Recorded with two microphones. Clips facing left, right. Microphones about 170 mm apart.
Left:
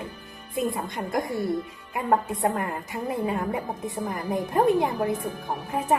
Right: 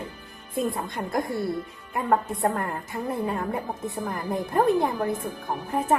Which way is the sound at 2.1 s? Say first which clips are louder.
Even; 15° left (ahead or behind).